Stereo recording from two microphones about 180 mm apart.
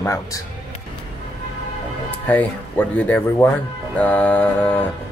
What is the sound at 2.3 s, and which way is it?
Speech, 10° left (ahead or behind).